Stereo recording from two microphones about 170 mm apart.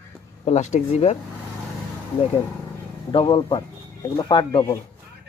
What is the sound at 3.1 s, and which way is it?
Speech, 30° left (ahead or behind).